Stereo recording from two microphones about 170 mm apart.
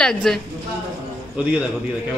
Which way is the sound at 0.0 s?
5° left (ahead or behind).